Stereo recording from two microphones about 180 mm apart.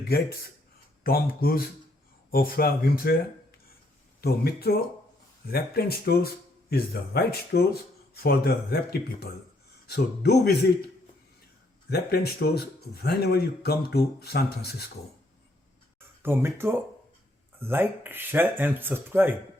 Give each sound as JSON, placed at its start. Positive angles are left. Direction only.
{"t": 1.0, "sound": "speech", "side_deg": 55}
{"t": 11.9, "sound": "speech", "side_deg": 60}
{"t": 16.0, "sound": "speech", "side_deg": -10}